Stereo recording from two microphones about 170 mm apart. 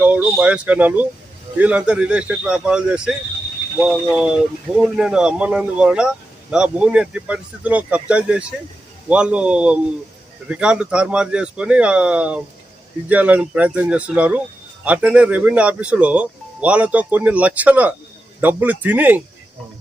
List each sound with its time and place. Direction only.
0.0 s speech: 10° right (ahead or behind)